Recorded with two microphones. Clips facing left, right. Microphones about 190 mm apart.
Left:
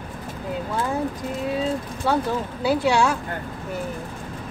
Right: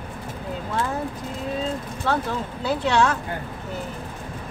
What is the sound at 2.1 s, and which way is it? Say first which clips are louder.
Speech: left 2 dB; 10° left (ahead or behind).